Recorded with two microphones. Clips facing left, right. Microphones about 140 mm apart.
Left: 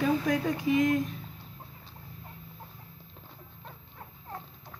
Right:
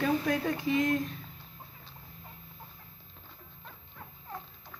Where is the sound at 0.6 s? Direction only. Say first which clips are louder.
Left 3 dB; 15° left (ahead or behind).